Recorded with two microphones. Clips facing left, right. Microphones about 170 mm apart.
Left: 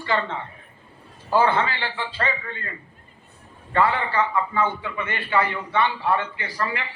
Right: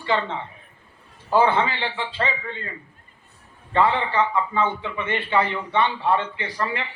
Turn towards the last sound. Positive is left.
turn(degrees=-25)  # may be behind; listen again after turning